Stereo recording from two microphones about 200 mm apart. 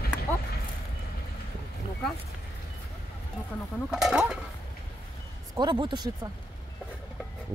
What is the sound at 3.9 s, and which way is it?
Speech, 5° right (ahead or behind).